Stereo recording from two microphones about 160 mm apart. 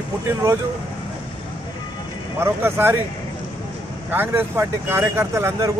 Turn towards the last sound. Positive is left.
turn(degrees=-15)  # may be behind; listen again after turning